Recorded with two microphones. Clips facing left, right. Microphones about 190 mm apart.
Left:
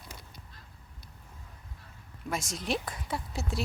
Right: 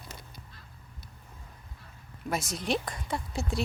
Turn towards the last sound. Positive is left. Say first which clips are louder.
# right 2 dB
turn(degrees=0)  # may be behind; listen again after turning